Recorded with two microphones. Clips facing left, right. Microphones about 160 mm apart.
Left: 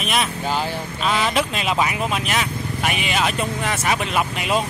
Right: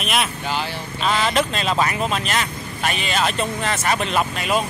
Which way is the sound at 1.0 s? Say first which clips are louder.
Right 1 dB; 5° left (ahead or behind).